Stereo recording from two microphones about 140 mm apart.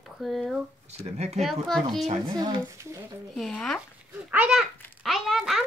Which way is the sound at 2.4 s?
20° right (ahead or behind).